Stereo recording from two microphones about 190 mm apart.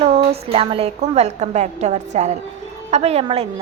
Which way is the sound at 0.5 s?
30° right (ahead or behind).